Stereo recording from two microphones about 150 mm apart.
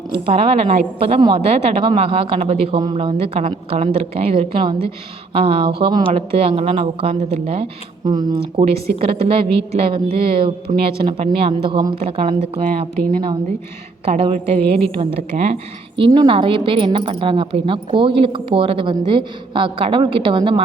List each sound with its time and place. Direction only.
0.1 s a woman's voice: 40° right (ahead or behind)
8.0 s speech: 25° right (ahead or behind)
8.5 s a woman's voice: 40° right (ahead or behind)
14.0 s a woman's voice: 40° right (ahead or behind)
16.1 s a woman's voice: 35° right (ahead or behind)